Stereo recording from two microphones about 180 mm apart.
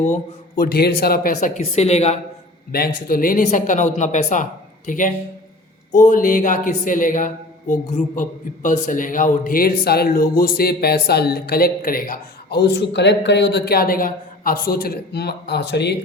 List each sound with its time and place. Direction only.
0.0 s a man's voice: 45° left (ahead or behind)
1.4 s a woman's voice: 40° left (ahead or behind)
2.7 s speech: 55° left (ahead or behind); by 16.0 s 70° left (ahead or behind)